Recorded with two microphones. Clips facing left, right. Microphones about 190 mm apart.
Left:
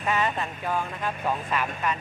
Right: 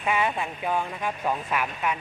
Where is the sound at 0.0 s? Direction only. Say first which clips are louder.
Right 1 dB; 10° right (ahead or behind).